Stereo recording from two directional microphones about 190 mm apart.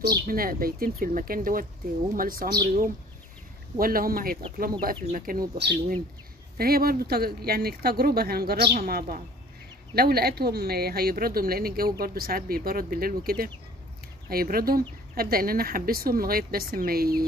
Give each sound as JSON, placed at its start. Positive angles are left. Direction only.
{"t": 0.0, "sound": "speech", "side_deg": -50}